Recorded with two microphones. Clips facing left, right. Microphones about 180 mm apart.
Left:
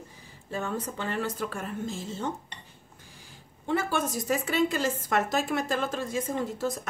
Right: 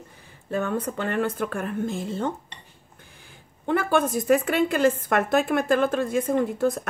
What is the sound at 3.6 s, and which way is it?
Speech, 55° right (ahead or behind).